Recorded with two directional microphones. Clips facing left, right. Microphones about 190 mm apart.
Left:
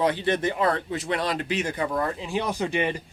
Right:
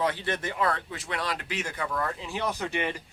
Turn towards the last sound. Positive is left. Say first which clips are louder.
# left 5 dB
turn(degrees=20)  # may be behind; listen again after turning